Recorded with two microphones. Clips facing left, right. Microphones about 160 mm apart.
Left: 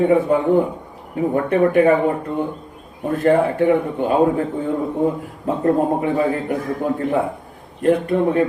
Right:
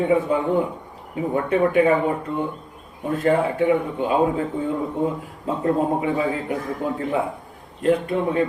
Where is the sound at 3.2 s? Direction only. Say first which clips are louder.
Left 4 dB; 50° left (ahead or behind).